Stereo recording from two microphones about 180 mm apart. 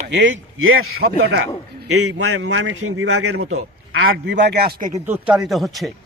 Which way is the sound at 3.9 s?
90° right.